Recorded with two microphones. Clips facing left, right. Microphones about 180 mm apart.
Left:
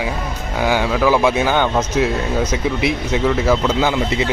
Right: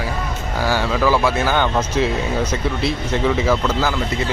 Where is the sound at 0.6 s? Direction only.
15° left (ahead or behind).